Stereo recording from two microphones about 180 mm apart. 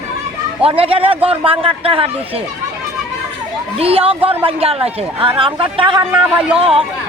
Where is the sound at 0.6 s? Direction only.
30° right (ahead or behind).